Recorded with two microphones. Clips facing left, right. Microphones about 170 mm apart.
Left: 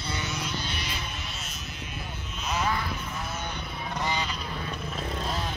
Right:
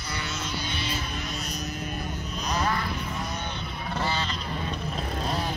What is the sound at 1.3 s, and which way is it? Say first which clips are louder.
Buzz: right 7 dB; 40° right (ahead or behind).